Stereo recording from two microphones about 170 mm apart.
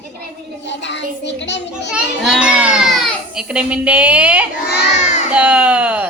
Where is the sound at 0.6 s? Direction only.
90° left.